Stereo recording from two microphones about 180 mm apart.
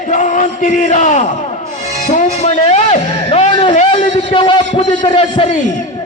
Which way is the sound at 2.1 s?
40° left (ahead or behind).